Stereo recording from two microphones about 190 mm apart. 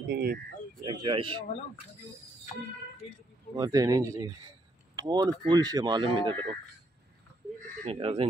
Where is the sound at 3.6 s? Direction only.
20° right (ahead or behind).